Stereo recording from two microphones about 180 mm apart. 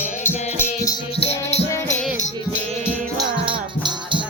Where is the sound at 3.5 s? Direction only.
25° right (ahead or behind).